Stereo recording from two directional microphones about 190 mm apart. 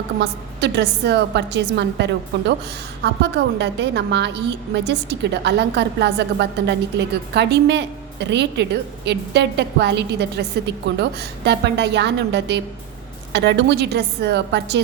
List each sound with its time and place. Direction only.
0.2 s a woman's voice: 60° right (ahead or behind)